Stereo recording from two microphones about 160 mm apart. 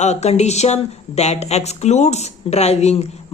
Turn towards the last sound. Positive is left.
turn(degrees=40)  # may be behind; listen again after turning